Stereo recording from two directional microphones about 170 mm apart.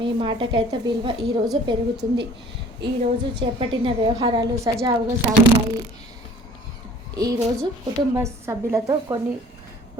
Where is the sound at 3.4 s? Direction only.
30° right (ahead or behind).